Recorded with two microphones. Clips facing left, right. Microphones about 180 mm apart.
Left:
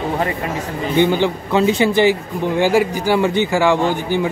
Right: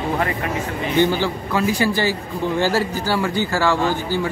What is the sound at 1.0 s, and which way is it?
A man's voice, 20° left (ahead or behind).